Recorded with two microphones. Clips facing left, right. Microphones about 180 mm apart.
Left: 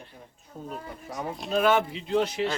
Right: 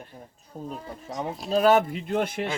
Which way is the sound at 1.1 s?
30° right (ahead or behind).